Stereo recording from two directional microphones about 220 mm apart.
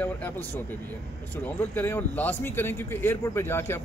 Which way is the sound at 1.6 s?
10° left (ahead or behind).